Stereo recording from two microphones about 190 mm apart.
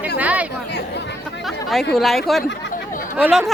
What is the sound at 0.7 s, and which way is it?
Speech, 65° left (ahead or behind).